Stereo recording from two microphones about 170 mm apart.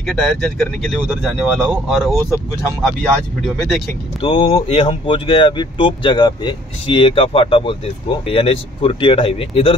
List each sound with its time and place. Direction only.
0.0 s speech: centre (ahead or behind)
4.2 s speech: 30° left (ahead or behind)